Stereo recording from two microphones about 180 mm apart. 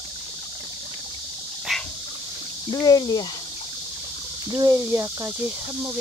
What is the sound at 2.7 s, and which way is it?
Speech, 20° left (ahead or behind).